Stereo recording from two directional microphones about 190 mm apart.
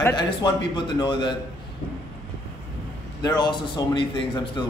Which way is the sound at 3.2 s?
20° left (ahead or behind).